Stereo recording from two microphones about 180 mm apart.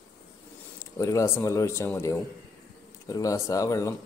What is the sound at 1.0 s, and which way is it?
Speech, 15° left (ahead or behind).